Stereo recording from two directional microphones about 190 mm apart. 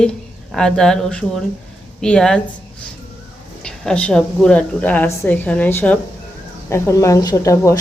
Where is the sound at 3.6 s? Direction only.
5° left (ahead or behind).